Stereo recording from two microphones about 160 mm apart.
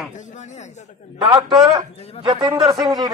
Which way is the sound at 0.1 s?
50° left (ahead or behind).